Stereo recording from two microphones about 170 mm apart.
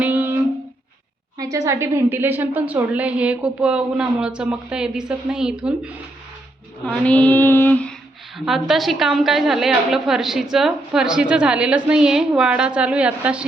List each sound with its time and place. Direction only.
0.0 s a sound: 10° right (ahead or behind)
1.4 s a woman's voice: 20° right (ahead or behind)
6.8 s female singing: 5° left (ahead or behind)
8.4 s a woman's voice: centre (ahead or behind)